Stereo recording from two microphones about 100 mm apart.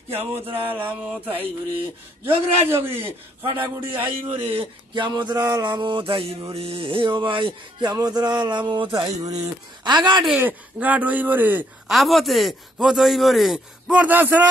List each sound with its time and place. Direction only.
0.3 s mantra: 20° right (ahead or behind)
2.2 s mantra: 25° right (ahead or behind)
4.0 s music: 60° right (ahead or behind)
5.3 s music: 40° right (ahead or behind); by 6.3 s 60° right (ahead or behind)
6.5 s music: 75° right (ahead or behind); by 9.0 s 50° right (ahead or behind)
9.0 s speech: 35° right (ahead or behind)
10.4 s speech: 15° right (ahead or behind)
11.9 s a man's voice: centre (ahead or behind)
13.9 s speech: 15° right (ahead or behind)